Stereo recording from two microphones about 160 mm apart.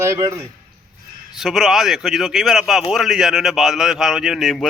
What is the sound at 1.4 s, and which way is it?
A man's voice, centre (ahead or behind).